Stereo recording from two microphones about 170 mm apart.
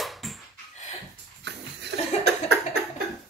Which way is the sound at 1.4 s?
85° right.